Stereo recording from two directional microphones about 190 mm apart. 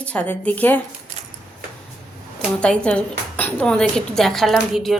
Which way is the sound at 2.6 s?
5° left (ahead or behind).